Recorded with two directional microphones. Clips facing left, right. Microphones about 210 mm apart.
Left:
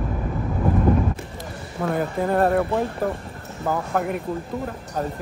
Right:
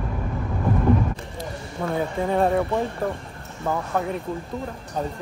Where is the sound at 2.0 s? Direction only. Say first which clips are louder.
Left 1 dB; 5° left (ahead or behind).